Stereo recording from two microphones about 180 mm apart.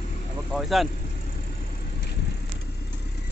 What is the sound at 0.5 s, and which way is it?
Speech, centre (ahead or behind).